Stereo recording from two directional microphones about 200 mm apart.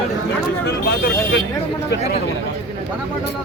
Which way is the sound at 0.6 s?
55° left (ahead or behind).